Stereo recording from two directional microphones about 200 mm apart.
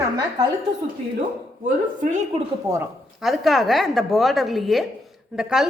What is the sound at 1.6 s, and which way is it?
Speech, 40° right (ahead or behind).